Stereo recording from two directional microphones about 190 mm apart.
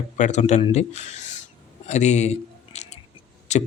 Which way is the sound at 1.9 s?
40° left (ahead or behind).